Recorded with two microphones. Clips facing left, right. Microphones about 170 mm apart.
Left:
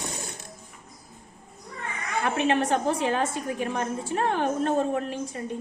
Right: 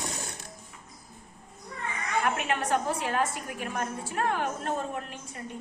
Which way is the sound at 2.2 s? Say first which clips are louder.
Left 8 dB; 30° left (ahead or behind).